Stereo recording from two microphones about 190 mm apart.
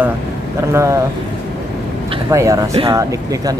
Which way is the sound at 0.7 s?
15° right (ahead or behind).